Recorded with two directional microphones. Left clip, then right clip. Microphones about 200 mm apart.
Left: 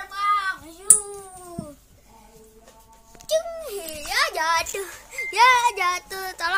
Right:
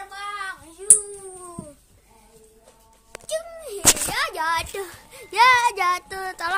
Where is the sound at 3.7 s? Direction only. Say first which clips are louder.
Right 6 dB; 10° left (ahead or behind).